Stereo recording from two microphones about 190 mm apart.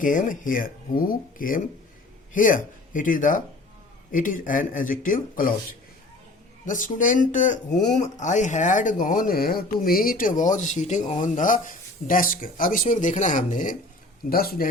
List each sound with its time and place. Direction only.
0.0 s speech: 45° left (ahead or behind)
6.7 s speech: 45° left (ahead or behind)